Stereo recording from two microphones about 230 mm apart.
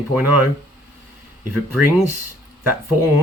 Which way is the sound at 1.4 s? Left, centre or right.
Right.